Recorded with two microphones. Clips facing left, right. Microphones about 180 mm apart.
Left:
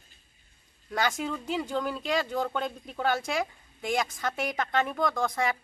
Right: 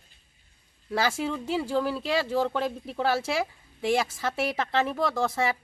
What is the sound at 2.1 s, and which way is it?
A woman's voice, 30° right (ahead or behind).